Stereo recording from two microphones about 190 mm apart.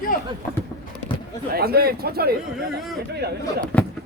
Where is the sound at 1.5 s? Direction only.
55° right (ahead or behind).